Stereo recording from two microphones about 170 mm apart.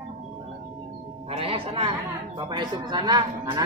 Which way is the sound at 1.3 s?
30° right (ahead or behind).